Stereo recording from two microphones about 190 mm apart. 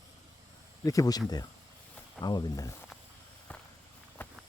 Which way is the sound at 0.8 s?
20° left (ahead or behind).